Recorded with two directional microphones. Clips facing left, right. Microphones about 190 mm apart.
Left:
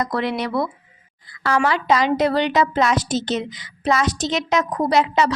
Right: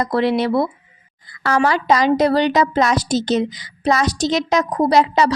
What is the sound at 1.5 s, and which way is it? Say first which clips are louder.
A woman's voice: right 2 dB; 40° right (ahead or behind).